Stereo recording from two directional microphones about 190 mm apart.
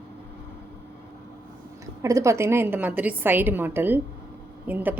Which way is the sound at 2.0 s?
15° right (ahead or behind).